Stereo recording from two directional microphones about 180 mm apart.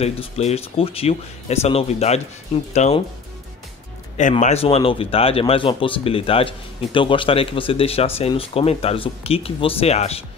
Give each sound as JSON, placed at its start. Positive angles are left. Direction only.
{"t": 0.0, "sound": "speech", "side_deg": 35}
{"t": 4.2, "sound": "speech", "side_deg": 40}